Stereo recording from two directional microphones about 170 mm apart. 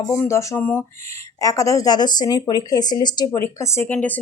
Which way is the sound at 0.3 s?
15° left (ahead or behind).